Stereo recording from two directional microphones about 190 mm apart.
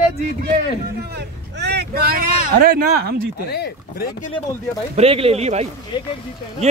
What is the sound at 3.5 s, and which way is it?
Speech, 55° left (ahead or behind).